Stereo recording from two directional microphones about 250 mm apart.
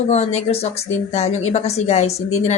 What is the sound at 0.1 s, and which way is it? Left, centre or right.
A woman's voice, left.